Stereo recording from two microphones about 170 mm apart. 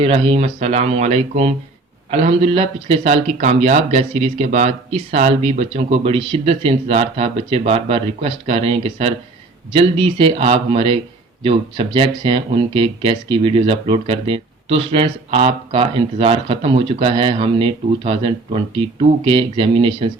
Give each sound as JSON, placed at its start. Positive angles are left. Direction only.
{"t": 0.0, "sound": "speech", "side_deg": -35}